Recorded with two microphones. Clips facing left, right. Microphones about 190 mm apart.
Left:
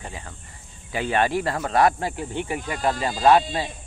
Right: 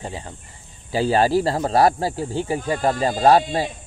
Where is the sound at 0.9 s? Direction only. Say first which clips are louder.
Right 5 dB; 35° right (ahead or behind).